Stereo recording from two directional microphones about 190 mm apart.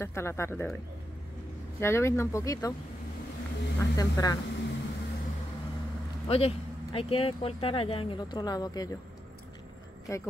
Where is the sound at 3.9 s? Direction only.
20° left (ahead or behind).